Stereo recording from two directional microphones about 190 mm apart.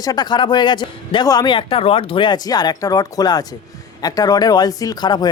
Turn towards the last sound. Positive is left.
turn(degrees=20)  # may be behind; listen again after turning